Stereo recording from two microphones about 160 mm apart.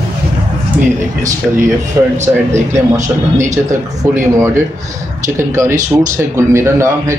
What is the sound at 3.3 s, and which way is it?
Speech, 50° right (ahead or behind).